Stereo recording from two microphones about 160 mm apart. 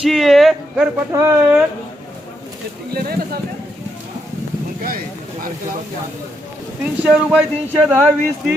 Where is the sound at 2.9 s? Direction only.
75° right (ahead or behind).